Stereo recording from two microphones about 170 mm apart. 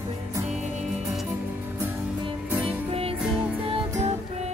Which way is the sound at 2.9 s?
35° right (ahead or behind).